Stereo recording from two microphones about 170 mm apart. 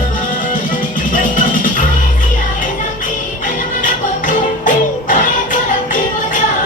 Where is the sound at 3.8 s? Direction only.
50° left (ahead or behind).